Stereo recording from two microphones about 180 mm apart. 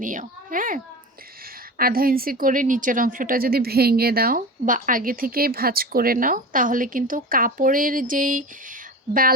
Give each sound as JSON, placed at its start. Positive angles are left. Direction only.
{"t": 0.0, "sound": "a woman's voice", "side_deg": -45}
{"t": 1.8, "sound": "a woman's voice", "side_deg": -55}